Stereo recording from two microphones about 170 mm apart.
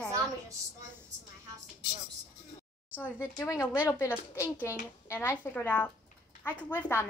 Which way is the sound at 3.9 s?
15° left (ahead or behind).